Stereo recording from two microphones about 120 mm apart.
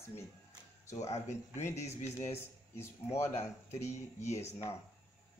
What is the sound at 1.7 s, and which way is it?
Speech, 65° left (ahead or behind).